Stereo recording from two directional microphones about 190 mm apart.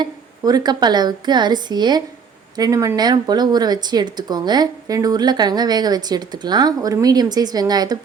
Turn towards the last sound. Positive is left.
turn(degrees=-20)  # may be behind; listen again after turning